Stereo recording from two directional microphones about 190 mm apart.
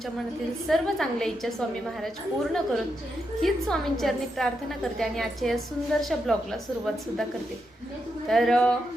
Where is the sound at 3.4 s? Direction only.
Centre (ahead or behind).